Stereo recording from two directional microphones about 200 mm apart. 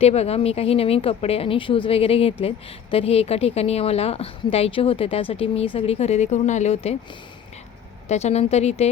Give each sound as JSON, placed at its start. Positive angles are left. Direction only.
{"t": 0.0, "sound": "a woman's voice", "side_deg": 30}
{"t": 8.0, "sound": "a woman's voice", "side_deg": 35}